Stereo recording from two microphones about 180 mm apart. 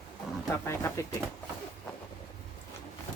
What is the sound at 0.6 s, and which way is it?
Speech, 15° left (ahead or behind).